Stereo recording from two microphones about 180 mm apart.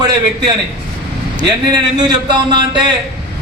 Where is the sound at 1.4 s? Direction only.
25° right (ahead or behind).